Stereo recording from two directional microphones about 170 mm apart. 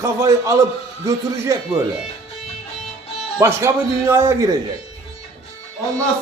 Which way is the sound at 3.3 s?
15° right (ahead or behind).